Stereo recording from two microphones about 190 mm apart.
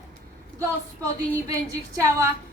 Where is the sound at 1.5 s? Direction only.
15° right (ahead or behind).